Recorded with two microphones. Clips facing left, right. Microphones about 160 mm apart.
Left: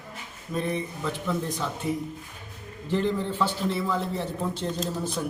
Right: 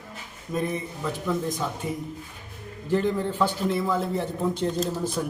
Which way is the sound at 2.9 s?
10° right (ahead or behind).